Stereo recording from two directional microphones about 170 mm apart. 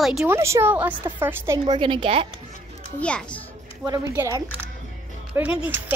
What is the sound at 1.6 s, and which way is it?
Speech, 25° right (ahead or behind).